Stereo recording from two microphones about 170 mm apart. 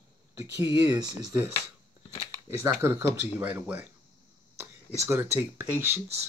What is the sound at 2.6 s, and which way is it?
Speech, 15° right (ahead or behind).